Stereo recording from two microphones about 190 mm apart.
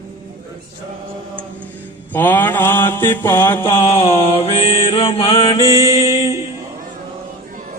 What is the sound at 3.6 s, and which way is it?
Mantra, 30° left (ahead or behind).